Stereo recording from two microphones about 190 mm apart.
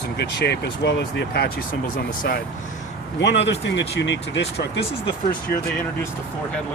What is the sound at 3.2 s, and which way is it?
Speech, 65° left (ahead or behind).